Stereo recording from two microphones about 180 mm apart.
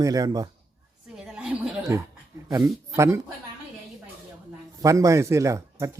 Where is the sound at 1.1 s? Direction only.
5° right (ahead or behind).